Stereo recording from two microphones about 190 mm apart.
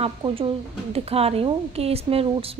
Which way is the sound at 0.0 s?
30° right (ahead or behind).